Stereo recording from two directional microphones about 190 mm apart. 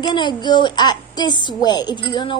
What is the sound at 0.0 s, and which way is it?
A woman's voice, 25° left (ahead or behind).